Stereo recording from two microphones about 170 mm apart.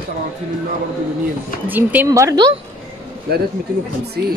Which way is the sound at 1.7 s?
10° right (ahead or behind).